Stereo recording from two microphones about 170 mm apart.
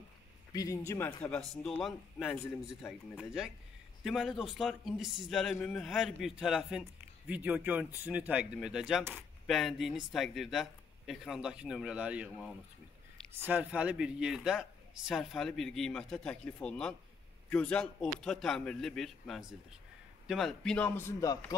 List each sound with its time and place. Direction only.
0.5 s speech: 20° left (ahead or behind)
1.6 s a man's voice: centre (ahead or behind)
12.3 s a man's voice: 5° left (ahead or behind)
13.4 s a man's voice: 10° right (ahead or behind); by 21.4 s 20° left (ahead or behind)